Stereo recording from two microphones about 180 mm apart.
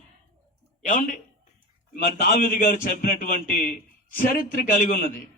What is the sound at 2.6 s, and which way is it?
A man's voice, 55° left (ahead or behind).